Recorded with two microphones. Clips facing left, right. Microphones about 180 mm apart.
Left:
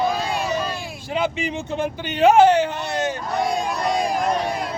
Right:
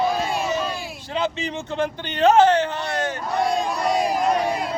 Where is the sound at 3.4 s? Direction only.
Centre (ahead or behind).